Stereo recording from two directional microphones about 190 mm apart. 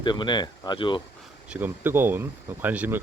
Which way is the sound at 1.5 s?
10° right (ahead or behind).